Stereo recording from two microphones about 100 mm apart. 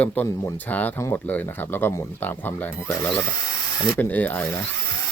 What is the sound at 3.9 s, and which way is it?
Speech, 20° left (ahead or behind).